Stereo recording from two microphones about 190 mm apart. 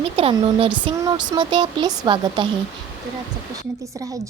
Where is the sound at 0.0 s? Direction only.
30° right (ahead or behind).